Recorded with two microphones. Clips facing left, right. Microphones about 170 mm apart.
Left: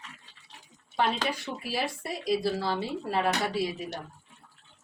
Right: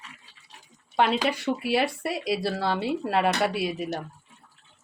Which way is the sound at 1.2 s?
75° right (ahead or behind).